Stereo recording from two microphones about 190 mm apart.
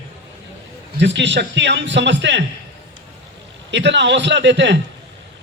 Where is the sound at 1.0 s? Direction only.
65° right (ahead or behind).